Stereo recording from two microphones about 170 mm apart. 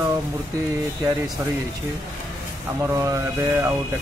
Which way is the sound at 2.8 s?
20° right (ahead or behind).